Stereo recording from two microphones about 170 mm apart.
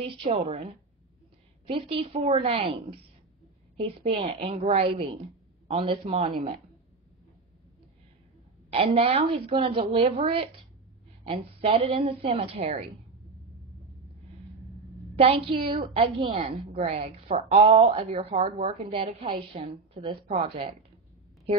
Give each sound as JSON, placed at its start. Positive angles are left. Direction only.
{"t": 0.0, "sound": "a woman's voice", "side_deg": -35}
{"t": 8.6, "sound": "a woman's voice", "side_deg": -35}
{"t": 15.1, "sound": "a woman's voice", "side_deg": -35}